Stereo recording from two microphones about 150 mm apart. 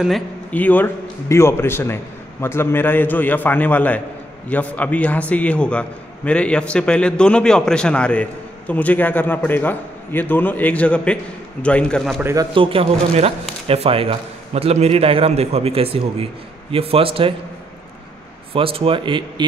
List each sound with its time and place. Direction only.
0.5 s a man's voice: 10° left (ahead or behind)
12.2 s speech: 15° right (ahead or behind)
12.5 s speech: 35° right (ahead or behind)
18.5 s speech: 35° right (ahead or behind)